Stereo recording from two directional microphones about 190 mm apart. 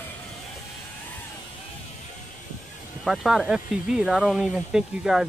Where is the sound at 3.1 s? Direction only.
Centre (ahead or behind).